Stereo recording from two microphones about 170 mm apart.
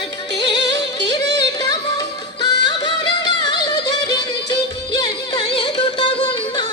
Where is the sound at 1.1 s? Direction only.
25° left (ahead or behind).